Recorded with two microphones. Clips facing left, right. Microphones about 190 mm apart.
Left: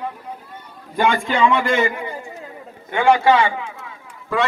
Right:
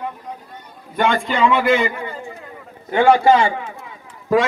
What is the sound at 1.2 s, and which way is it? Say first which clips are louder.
Speech: right 1 dB; centre (ahead or behind).